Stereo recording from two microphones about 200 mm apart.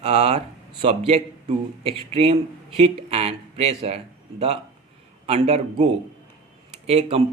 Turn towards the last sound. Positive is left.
turn(degrees=-30)  # may be behind; listen again after turning